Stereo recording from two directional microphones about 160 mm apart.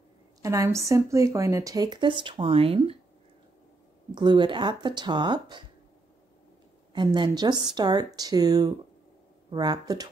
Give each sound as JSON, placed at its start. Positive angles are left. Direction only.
{"t": 0.4, "sound": "a woman's voice", "side_deg": -20}
{"t": 4.1, "sound": "a woman's voice", "side_deg": -30}
{"t": 6.9, "sound": "a woman's voice", "side_deg": -30}